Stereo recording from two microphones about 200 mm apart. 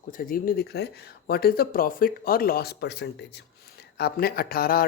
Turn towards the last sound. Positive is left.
turn(degrees=50)  # may be behind; listen again after turning